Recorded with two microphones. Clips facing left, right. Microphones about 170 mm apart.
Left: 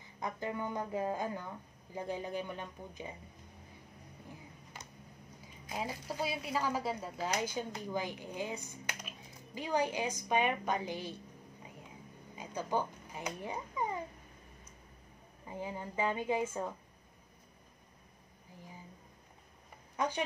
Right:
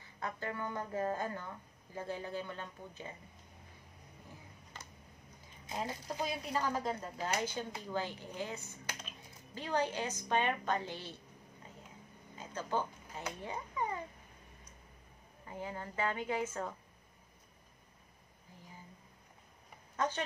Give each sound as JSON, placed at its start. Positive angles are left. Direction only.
{"t": 0.0, "sound": "speech", "side_deg": 15}
{"t": 5.8, "sound": "speech", "side_deg": 5}
{"t": 12.4, "sound": "speech", "side_deg": 15}
{"t": 15.4, "sound": "speech", "side_deg": 15}
{"t": 20.0, "sound": "speech", "side_deg": 15}